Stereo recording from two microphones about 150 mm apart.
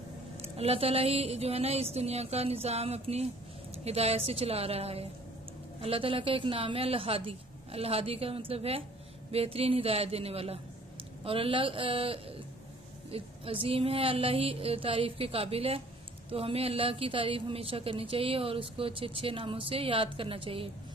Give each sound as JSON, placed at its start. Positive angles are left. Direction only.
{"t": 0.4, "sound": "a woman's voice", "side_deg": -40}